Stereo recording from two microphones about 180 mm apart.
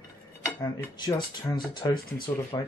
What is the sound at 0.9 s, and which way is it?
Speech, 25° left (ahead or behind).